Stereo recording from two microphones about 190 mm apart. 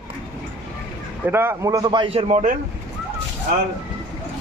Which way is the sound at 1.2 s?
10° right (ahead or behind).